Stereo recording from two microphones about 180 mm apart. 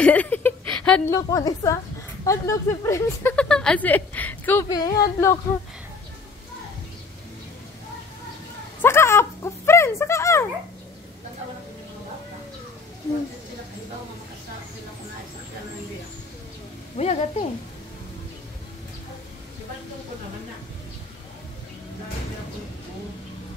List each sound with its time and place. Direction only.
0.0 s speech: 10° left (ahead or behind)
1.1 s speech: 20° left (ahead or behind)
3.3 s speech: 5° left (ahead or behind)
4.6 s speech: 20° left (ahead or behind)
8.8 s speech: 15° left (ahead or behind)
16.9 s a woman's voice: 35° left (ahead or behind)